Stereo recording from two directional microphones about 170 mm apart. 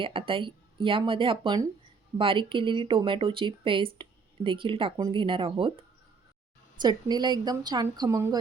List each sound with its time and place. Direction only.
0.0 s speech: 30° right (ahead or behind)